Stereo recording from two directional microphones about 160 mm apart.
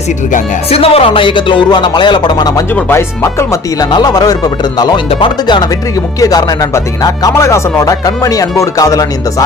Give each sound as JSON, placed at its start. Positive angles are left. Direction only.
{"t": 0.7, "sound": "speech", "side_deg": 40}
{"t": 2.7, "sound": "speech", "side_deg": 15}